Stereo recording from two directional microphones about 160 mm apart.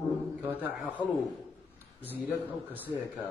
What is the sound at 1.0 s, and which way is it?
Speech, 30° left (ahead or behind).